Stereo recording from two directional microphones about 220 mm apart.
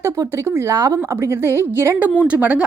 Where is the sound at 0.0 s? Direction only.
15° right (ahead or behind).